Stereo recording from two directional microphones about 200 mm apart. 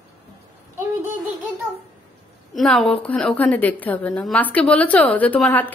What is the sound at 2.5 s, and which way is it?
A woman's voice, centre (ahead or behind).